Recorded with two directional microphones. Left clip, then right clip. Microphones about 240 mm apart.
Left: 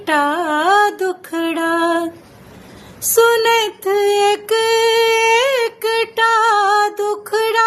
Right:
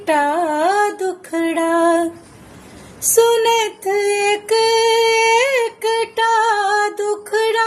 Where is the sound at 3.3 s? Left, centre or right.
Centre.